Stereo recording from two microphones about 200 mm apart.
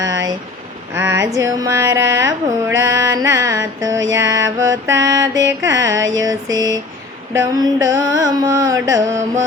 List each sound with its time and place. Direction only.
0.0 s vehicle: 20° right (ahead or behind)
0.9 s mantra: 15° right (ahead or behind)